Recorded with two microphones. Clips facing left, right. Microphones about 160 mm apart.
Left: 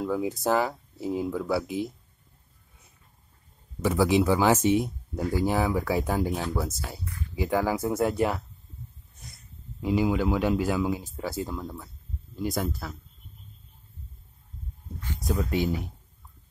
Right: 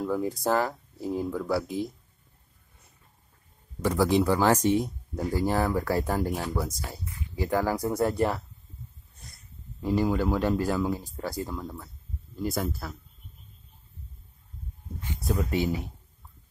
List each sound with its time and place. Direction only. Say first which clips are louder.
0.0 s speech: even; 5° left (ahead or behind)
3.8 s speech: left 1 dB; 5° left (ahead or behind)
7.1 s a sound: left 2 dB; 20° right (ahead or behind)
7.3 s speech: left 1 dB; 5° left (ahead or behind)
15.2 s speech: even; centre (ahead or behind)